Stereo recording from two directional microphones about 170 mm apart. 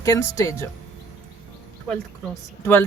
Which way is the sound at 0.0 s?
20° left (ahead or behind).